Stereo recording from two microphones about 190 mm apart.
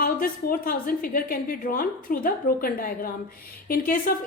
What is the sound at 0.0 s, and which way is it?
A woman's voice, 50° left (ahead or behind).